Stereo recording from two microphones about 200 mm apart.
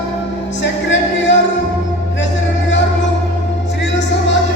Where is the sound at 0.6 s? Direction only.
65° left (ahead or behind).